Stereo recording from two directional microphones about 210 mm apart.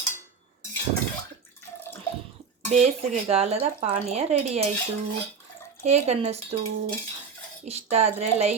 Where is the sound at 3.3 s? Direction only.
30° right (ahead or behind).